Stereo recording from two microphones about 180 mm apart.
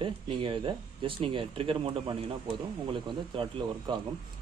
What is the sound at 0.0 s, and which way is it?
Speech, 30° right (ahead or behind).